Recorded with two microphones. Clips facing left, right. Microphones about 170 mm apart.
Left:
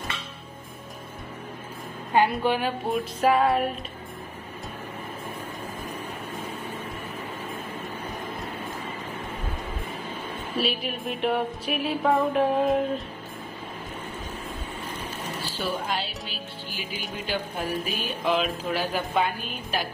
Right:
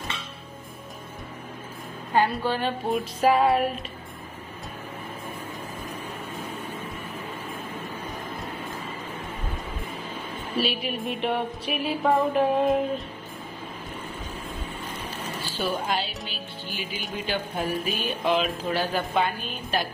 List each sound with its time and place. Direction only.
2.1 s a woman's voice: 20° left (ahead or behind)
2.9 s speech: centre (ahead or behind)
10.6 s speech: centre (ahead or behind)
15.9 s speech: centre (ahead or behind)